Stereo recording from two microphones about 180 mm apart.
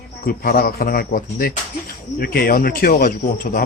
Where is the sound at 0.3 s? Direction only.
55° left (ahead or behind).